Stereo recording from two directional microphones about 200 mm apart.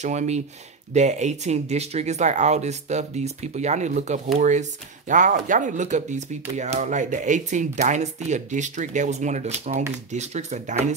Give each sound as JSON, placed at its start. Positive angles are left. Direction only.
{"t": 0.0, "sound": "speech", "side_deg": -35}